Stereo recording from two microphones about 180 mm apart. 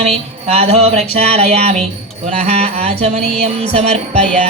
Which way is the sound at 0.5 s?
35° right (ahead or behind).